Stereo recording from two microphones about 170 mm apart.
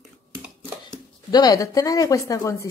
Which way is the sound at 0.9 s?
25° left (ahead or behind).